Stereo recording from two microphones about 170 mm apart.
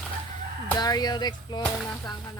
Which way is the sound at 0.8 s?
25° left (ahead or behind).